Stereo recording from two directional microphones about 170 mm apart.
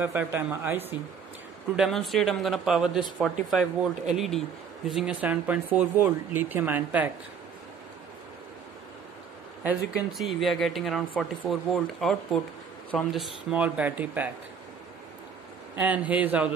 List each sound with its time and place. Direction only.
0.0 s speech: 10° right (ahead or behind)
1.8 s speech: centre (ahead or behind)
9.6 s speech: 5° right (ahead or behind)
15.7 s speech: 10° right (ahead or behind)